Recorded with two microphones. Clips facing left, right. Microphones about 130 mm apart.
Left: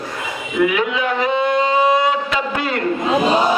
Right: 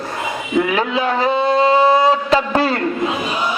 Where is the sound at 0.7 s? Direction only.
35° right (ahead or behind).